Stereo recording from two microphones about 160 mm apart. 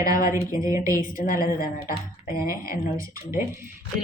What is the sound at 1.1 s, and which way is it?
Speech, 60° left (ahead or behind).